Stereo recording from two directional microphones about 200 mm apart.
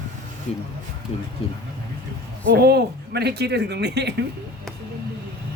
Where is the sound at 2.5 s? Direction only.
55° right (ahead or behind).